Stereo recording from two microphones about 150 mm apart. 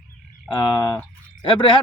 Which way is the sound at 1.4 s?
35° left (ahead or behind).